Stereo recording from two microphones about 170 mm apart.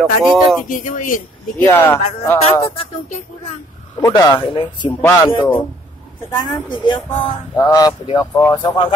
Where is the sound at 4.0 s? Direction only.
20° left (ahead or behind).